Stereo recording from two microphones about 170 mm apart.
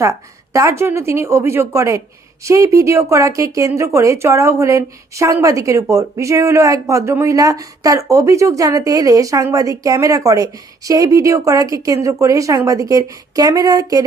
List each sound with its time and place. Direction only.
0.0 s speech: 15° right (ahead or behind)